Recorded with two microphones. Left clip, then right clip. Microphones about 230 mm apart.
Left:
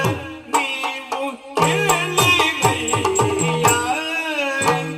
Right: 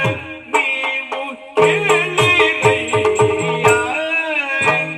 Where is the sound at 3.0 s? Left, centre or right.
Left.